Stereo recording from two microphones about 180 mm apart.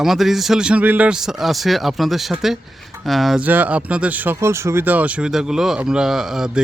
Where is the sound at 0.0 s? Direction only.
Centre (ahead or behind).